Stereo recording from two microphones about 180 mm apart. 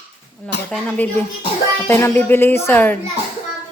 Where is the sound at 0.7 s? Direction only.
10° left (ahead or behind).